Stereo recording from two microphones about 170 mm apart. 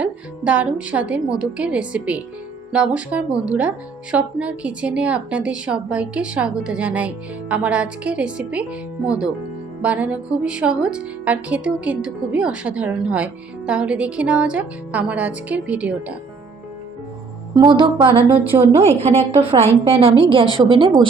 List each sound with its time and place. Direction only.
0.0 s a woman's voice: 10° right (ahead or behind)
17.5 s music: 30° right (ahead or behind)
18.8 s a woman's voice: 35° right (ahead or behind)
20.7 s music: 30° right (ahead or behind)